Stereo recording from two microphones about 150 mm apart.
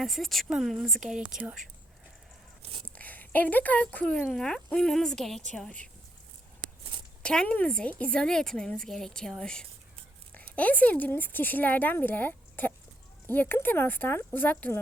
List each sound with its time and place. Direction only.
0.0 s a woman's voice: centre (ahead or behind)
2.6 s a sound: 40° right (ahead or behind)
2.8 s speech: 10° left (ahead or behind)
7.2 s a woman's voice: 5° left (ahead or behind)